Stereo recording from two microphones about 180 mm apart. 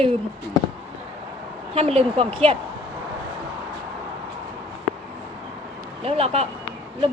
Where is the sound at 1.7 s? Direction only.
35° right (ahead or behind).